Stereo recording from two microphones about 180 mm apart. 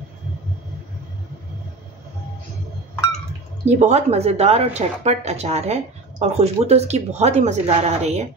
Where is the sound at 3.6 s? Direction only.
40° right (ahead or behind).